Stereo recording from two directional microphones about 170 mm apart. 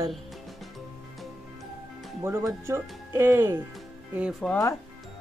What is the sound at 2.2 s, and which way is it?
Speech, 15° right (ahead or behind).